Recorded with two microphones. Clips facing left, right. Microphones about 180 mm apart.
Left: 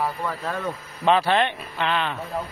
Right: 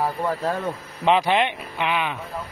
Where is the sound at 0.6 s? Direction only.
15° right (ahead or behind).